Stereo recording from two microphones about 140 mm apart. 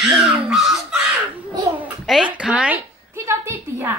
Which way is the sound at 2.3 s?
10° right (ahead or behind).